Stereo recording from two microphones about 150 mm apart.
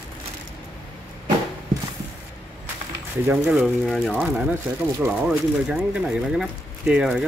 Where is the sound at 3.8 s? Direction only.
Centre (ahead or behind).